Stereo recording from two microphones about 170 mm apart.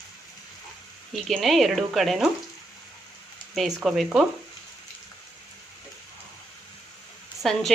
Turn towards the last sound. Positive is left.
turn(degrees=0)  # may be behind; listen again after turning